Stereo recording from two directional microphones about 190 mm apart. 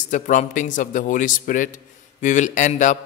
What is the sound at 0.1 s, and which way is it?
A man's voice, 40° left (ahead or behind).